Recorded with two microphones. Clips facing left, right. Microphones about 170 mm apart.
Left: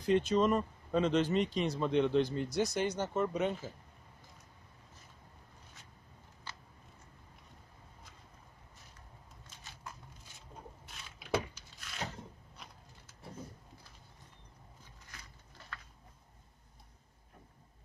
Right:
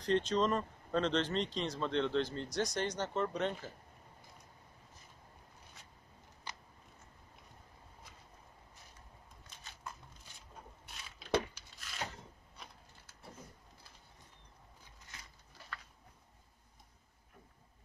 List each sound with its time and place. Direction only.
0.0 s speech: 10° left (ahead or behind)
6.5 s scissors: 15° right (ahead or behind)
11.1 s a sound: 5° left (ahead or behind)